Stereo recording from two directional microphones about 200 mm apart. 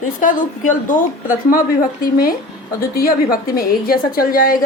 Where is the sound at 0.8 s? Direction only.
45° left (ahead or behind).